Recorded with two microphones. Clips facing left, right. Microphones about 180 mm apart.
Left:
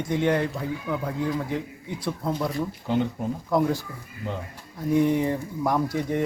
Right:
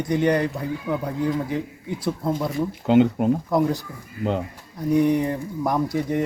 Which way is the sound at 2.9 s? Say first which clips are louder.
Right 10 dB; 90° right.